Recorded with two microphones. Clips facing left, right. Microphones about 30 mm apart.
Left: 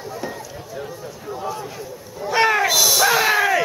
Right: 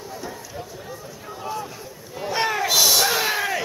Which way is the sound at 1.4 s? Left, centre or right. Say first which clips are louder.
Left 1 dB; centre.